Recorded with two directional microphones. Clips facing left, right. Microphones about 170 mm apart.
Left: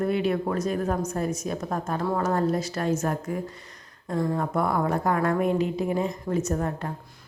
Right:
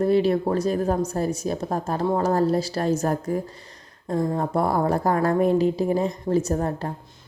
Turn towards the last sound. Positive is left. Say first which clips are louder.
# right 3 dB
turn(degrees=-35)  # may be behind; listen again after turning